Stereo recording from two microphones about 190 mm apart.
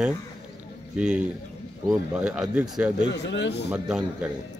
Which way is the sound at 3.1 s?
65° left (ahead or behind).